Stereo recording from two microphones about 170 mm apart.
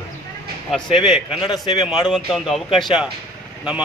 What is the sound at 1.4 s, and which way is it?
Speech, 25° left (ahead or behind).